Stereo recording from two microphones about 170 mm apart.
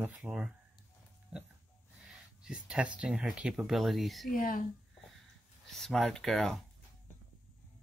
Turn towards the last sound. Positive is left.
turn(degrees=0)  # may be behind; listen again after turning